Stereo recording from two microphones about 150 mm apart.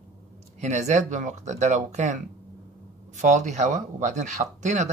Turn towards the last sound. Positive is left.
turn(degrees=-50)  # may be behind; listen again after turning